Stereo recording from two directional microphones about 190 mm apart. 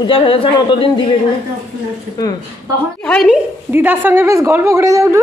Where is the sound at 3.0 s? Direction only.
Centre (ahead or behind).